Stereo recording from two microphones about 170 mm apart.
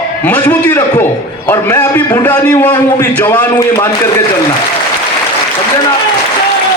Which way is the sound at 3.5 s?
15° left (ahead or behind).